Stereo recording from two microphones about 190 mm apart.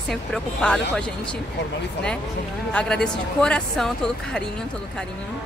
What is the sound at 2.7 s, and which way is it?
Speech, 5° left (ahead or behind).